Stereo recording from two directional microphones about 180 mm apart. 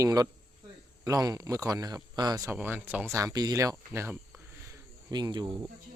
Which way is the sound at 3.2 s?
20° right (ahead or behind).